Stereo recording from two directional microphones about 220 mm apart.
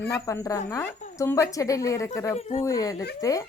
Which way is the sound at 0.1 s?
15° left (ahead or behind).